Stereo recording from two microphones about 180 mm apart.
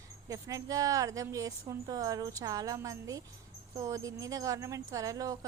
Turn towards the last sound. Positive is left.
turn(degrees=-20)  # may be behind; listen again after turning